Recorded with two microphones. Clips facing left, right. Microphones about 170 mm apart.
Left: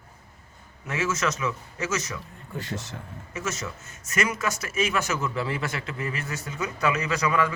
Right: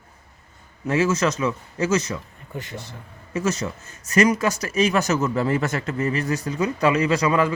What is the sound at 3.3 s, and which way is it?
Speech, 35° right (ahead or behind).